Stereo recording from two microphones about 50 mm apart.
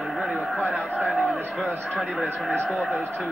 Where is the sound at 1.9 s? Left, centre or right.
Left.